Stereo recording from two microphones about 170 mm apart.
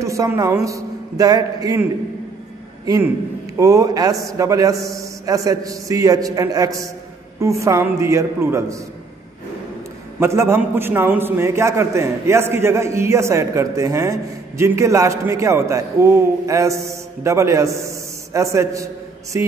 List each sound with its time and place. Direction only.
0.0 s a man's voice: 20° right (ahead or behind)
3.5 s a man's voice: 20° right (ahead or behind)
10.2 s a man's voice: 15° right (ahead or behind)